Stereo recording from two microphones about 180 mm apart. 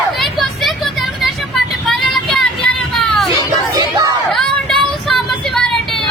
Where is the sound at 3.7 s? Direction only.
20° right (ahead or behind).